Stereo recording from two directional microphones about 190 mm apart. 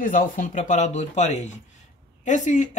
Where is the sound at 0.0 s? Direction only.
45° left (ahead or behind).